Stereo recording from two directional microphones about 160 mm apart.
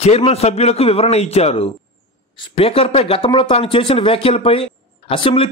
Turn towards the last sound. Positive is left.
turn(degrees=35)  # may be behind; listen again after turning